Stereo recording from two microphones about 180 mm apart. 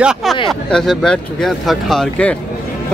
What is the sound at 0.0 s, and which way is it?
Speech, centre (ahead or behind).